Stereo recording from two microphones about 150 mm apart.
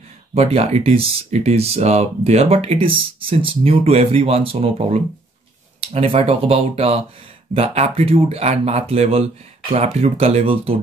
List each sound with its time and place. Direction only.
0.3 s speech: 40° right (ahead or behind)